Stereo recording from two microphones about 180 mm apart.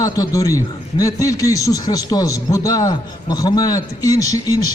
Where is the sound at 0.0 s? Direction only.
20° left (ahead or behind).